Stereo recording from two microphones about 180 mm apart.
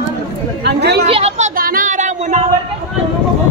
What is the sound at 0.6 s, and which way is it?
Speech, 65° right (ahead or behind).